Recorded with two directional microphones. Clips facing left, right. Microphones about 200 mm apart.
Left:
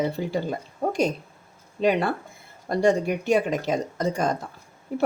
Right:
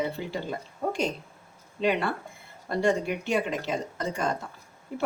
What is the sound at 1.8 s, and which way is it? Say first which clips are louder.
Speech: left 4 dB; 40° left (ahead or behind).